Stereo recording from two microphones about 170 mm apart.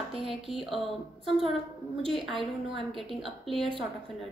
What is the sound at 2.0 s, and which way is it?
A woman's voice, centre (ahead or behind).